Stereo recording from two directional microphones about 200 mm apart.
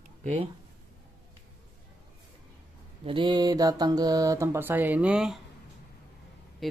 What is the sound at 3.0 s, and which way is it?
Speech, 25° right (ahead or behind).